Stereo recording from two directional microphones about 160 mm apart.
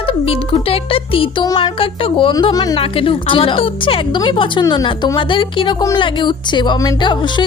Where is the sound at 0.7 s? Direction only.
35° left (ahead or behind).